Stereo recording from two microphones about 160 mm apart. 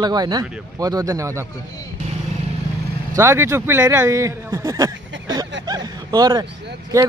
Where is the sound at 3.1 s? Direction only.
20° right (ahead or behind).